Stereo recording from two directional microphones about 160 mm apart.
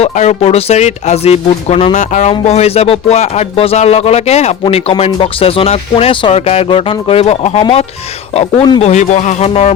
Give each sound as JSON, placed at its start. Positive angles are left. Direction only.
{"t": 0.0, "sound": "speech", "side_deg": 40}